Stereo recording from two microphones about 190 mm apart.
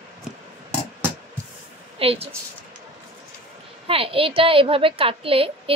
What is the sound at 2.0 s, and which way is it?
Speech, 30° right (ahead or behind).